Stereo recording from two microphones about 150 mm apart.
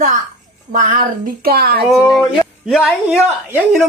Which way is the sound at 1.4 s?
90° right.